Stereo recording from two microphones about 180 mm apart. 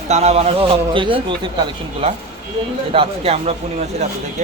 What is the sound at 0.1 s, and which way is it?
A man's voice, 35° right (ahead or behind).